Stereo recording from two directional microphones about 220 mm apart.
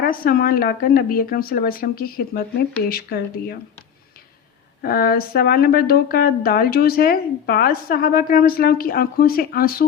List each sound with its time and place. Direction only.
0.0 s a woman's voice: 40° left (ahead or behind)
4.8 s speech: 40° left (ahead or behind)